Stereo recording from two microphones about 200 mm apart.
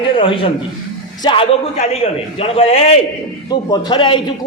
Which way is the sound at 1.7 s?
35° left (ahead or behind).